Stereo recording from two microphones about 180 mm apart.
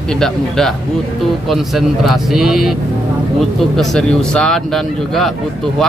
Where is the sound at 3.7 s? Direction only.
5° left (ahead or behind).